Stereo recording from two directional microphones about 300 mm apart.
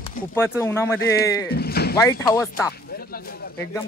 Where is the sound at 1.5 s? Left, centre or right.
Left.